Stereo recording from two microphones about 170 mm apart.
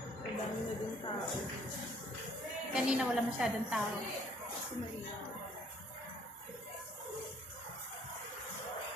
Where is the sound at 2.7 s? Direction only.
5° right (ahead or behind).